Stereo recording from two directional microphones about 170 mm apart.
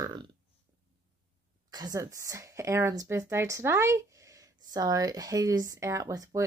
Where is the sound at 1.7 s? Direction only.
20° right (ahead or behind).